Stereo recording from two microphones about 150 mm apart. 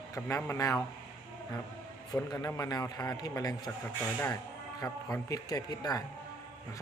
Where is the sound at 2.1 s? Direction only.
25° left (ahead or behind).